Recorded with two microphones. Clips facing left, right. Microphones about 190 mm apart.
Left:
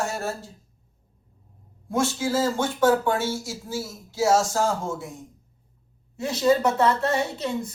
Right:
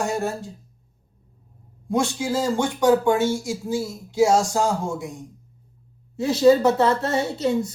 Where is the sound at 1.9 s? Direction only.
20° right (ahead or behind).